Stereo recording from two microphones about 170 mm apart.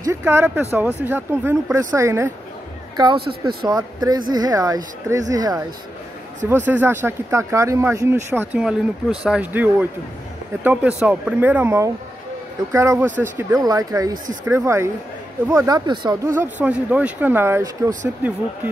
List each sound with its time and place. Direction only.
0.0 s speech: 15° right (ahead or behind)
3.3 s speech: 25° right (ahead or behind)
6.5 s speech: 10° right (ahead or behind)
16.3 s speech: 10° right (ahead or behind)